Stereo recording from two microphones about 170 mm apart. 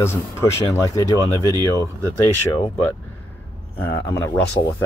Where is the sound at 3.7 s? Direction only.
15° left (ahead or behind).